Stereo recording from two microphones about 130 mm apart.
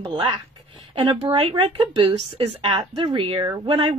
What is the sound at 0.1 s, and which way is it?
Speech, 35° right (ahead or behind).